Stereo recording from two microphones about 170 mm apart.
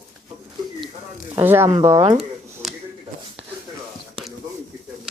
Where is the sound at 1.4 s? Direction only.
15° right (ahead or behind).